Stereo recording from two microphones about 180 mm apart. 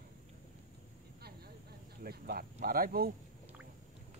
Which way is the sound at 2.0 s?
55° right (ahead or behind).